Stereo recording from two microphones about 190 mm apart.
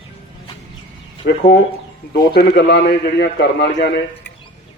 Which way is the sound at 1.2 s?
55° left (ahead or behind).